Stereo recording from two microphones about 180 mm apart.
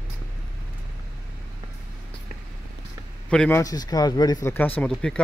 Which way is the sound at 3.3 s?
5° left (ahead or behind).